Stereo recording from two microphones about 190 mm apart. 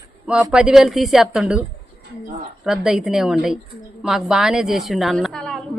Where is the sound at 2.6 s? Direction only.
Centre (ahead or behind).